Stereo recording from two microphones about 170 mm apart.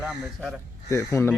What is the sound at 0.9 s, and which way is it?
Speech, 15° left (ahead or behind).